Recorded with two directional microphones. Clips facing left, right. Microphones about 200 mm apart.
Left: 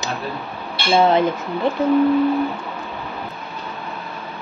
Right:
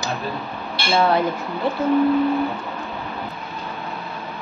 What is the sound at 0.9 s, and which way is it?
Speech, 20° left (ahead or behind).